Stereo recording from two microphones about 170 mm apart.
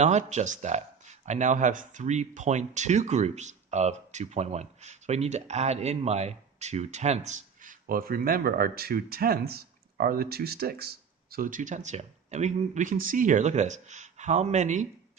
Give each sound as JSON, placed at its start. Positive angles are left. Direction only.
{"t": 0.0, "sound": "speech", "side_deg": -45}